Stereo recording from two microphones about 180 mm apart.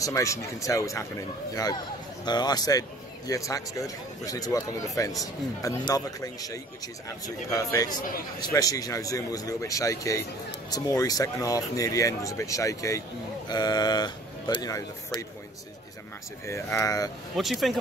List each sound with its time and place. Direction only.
0.0 s speech: 15° left (ahead or behind)
16.4 s speech: 15° left (ahead or behind)
17.4 s speech: centre (ahead or behind)